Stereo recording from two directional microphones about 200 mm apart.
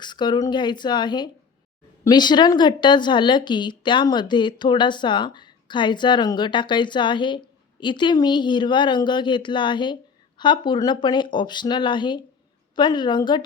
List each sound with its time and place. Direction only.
0.0 s speech: 20° left (ahead or behind)